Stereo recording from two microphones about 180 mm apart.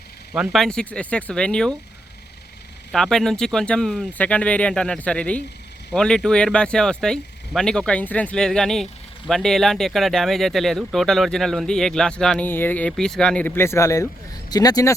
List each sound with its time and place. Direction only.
0.3 s speech: centre (ahead or behind)
2.9 s speech: centre (ahead or behind); by 14.9 s 20° left (ahead or behind)